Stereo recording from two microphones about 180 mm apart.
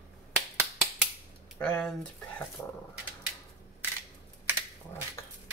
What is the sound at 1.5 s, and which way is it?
Speech, 5° left (ahead or behind).